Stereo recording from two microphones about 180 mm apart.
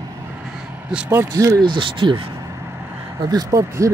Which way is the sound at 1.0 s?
15° right (ahead or behind).